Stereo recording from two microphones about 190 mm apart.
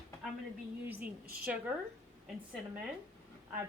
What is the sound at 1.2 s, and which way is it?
Speech, 55° right (ahead or behind).